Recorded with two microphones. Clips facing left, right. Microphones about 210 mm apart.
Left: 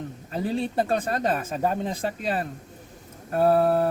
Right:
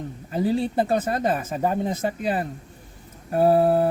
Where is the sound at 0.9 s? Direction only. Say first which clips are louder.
Right 3 dB; 25° right (ahead or behind).